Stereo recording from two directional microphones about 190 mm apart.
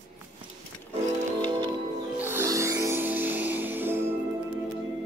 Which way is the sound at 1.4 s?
20° right (ahead or behind).